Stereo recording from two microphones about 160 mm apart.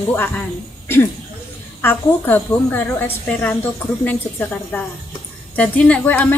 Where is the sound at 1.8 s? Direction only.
10° left (ahead or behind).